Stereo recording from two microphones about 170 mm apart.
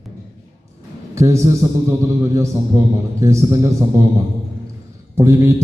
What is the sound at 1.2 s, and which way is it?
A man's voice, 15° right (ahead or behind).